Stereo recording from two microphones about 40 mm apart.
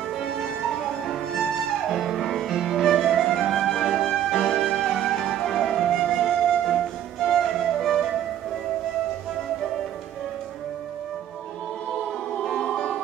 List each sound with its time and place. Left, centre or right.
0.7 s music: centre
5.0 s flute: centre
12.5 s music: centre